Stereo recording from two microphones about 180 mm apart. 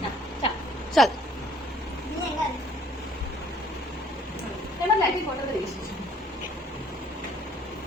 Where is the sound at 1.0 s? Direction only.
Centre (ahead or behind).